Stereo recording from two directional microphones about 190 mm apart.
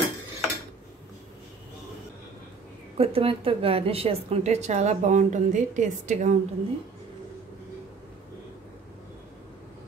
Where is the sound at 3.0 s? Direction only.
30° right (ahead or behind).